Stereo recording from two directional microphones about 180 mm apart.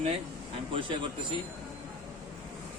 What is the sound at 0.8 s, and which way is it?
Speech, 25° right (ahead or behind).